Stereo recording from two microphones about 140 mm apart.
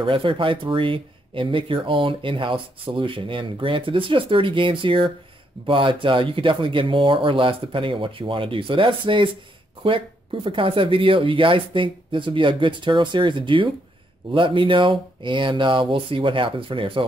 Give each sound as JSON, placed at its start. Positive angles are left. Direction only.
{"t": 0.0, "sound": "speech", "side_deg": -40}